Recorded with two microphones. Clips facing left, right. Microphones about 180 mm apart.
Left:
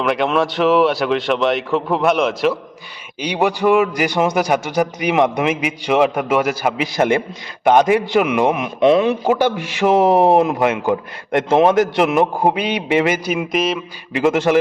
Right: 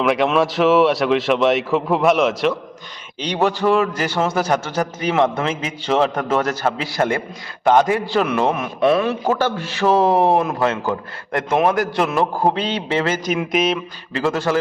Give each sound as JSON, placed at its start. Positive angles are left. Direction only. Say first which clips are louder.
{"t": 0.0, "sound": "speech", "louder": "right 1 dB", "side_deg": 0}
{"t": 3.2, "sound": "a man's voice", "louder": "left 1 dB", "side_deg": 10}
{"t": 13.3, "sound": "speech", "louder": "even", "side_deg": 0}
{"t": 14.1, "sound": "a man's voice", "louder": "left 5 dB", "side_deg": 15}